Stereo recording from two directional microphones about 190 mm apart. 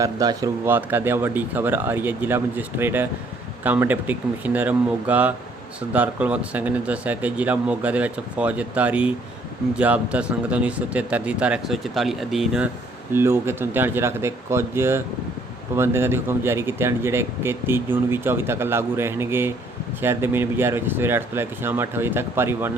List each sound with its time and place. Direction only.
0.0 s speech: 20° right (ahead or behind)